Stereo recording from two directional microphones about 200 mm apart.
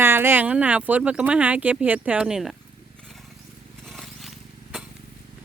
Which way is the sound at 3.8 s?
Centre (ahead or behind).